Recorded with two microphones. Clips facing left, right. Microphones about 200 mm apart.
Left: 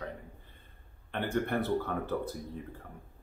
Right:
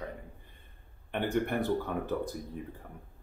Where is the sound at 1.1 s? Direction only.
15° right (ahead or behind).